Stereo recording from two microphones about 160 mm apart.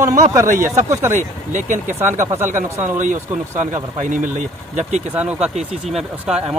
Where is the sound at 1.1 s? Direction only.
50° right (ahead or behind).